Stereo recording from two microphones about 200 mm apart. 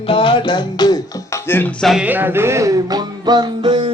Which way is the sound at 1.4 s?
10° left (ahead or behind).